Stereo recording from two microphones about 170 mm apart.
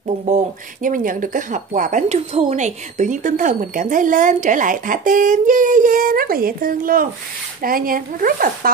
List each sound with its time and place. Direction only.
0.0 s speech: 40° right (ahead or behind)
0.8 s speech: 50° right (ahead or behind)